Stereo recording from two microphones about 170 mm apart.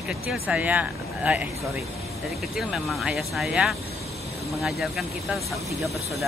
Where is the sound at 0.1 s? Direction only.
Centre (ahead or behind).